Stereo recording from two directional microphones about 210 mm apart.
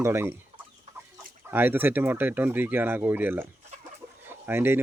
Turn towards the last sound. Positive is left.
turn(degrees=-10)  # may be behind; listen again after turning